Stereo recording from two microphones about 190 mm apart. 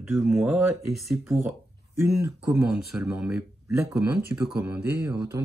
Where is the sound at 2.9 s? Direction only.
5° right (ahead or behind).